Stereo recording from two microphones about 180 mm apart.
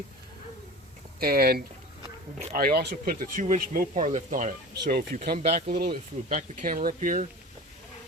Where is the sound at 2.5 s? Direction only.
55° right (ahead or behind).